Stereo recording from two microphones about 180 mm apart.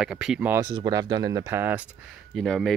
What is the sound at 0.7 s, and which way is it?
Speech, 25° right (ahead or behind).